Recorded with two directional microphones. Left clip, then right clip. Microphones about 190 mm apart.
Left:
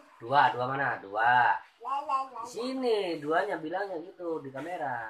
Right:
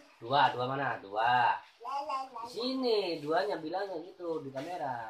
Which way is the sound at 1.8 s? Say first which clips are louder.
Left 5 dB; 20° left (ahead or behind).